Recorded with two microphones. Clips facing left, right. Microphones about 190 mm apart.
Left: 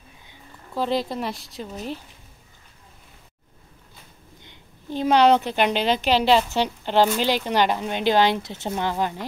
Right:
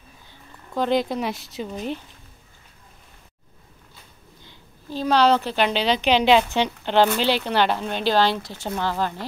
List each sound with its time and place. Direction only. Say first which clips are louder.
0.7 s speech: right 3 dB; centre (ahead or behind)
4.5 s a woman's voice: left 2 dB; 20° left (ahead or behind)
6.0 s speech: right 2 dB; 5° left (ahead or behind)